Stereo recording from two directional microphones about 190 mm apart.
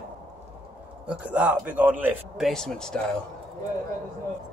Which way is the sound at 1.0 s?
5° right (ahead or behind).